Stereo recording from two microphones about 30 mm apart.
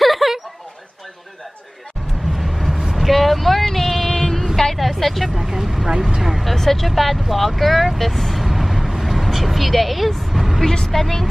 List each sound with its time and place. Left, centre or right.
0.0 s a sound: centre
2.3 s vehicle: centre
2.8 s vehicle: centre
3.1 s a sound: centre
4.1 s female singing: centre
4.7 s vehicle: centre
5.4 s vehicle: centre
5.9 s vehicle: centre
6.3 s speech: centre
10.3 s vehicle: centre
10.9 s a woman's voice: centre